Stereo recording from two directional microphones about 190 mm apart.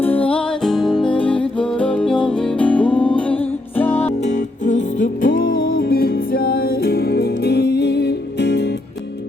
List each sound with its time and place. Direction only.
0.0 s music: 10° left (ahead or behind)
4.2 s music: 40° left (ahead or behind); by 8.7 s 65° left (ahead or behind)